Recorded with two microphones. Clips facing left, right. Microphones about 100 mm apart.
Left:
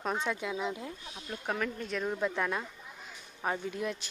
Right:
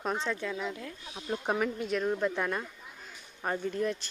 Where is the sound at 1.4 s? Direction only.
15° right (ahead or behind); by 4.1 s 5° left (ahead or behind).